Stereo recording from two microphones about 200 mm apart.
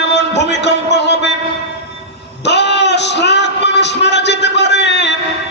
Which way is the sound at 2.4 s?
60° left (ahead or behind).